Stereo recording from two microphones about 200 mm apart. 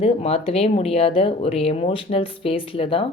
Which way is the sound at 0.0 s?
30° left (ahead or behind).